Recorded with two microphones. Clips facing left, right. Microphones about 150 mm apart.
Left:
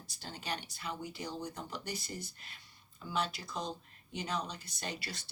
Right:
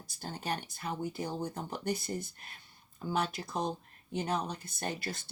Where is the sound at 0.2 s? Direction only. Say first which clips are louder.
Right 4 dB; 50° right (ahead or behind).